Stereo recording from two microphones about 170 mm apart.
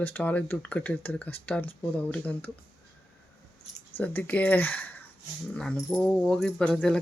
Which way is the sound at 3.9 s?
10° left (ahead or behind).